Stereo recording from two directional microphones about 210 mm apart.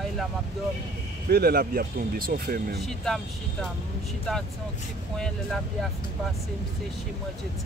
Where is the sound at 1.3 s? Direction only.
50° right (ahead or behind).